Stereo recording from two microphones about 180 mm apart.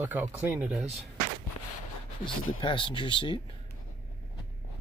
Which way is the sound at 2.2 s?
25° left (ahead or behind).